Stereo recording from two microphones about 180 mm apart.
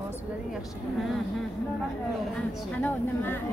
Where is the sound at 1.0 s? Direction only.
Centre (ahead or behind).